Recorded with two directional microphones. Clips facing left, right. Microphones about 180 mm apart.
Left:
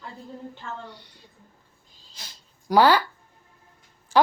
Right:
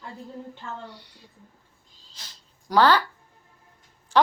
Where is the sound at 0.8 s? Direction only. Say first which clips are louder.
Even; 5° right (ahead or behind).